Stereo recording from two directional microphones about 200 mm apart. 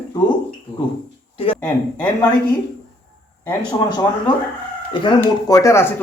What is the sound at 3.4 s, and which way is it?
A man's voice, 20° left (ahead or behind).